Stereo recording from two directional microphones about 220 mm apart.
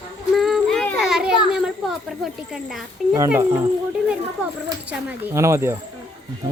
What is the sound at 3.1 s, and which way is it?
Speech, 10° right (ahead or behind).